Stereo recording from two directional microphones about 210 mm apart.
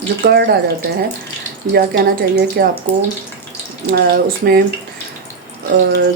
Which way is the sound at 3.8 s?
45° right (ahead or behind).